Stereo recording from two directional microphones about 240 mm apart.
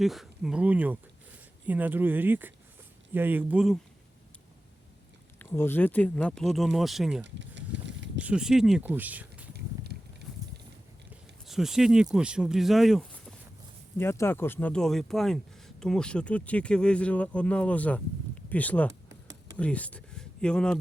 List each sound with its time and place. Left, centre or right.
0.0 s speech: centre
5.4 s speech: centre
7.3 s a sound: right
8.2 s speech: centre
9.5 s a sound: right
11.4 s speech: centre